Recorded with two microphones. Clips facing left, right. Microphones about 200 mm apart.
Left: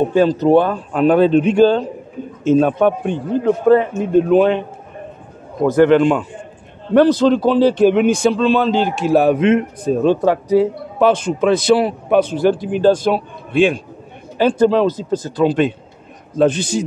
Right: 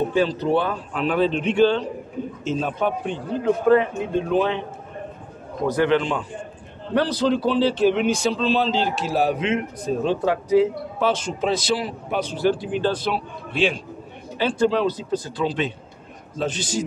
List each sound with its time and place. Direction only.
0.1 s speech: 45° left (ahead or behind)
2.4 s speech: 55° left (ahead or behind)
3.6 s speech: 45° left (ahead or behind)
5.7 s speech: 50° left (ahead or behind)
11.0 s a man's voice: 55° left (ahead or behind)